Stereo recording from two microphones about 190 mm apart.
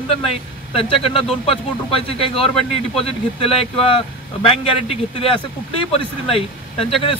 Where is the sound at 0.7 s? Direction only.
30° left (ahead or behind).